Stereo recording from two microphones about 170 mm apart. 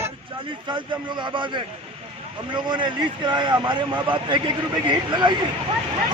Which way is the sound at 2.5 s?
25° right (ahead or behind).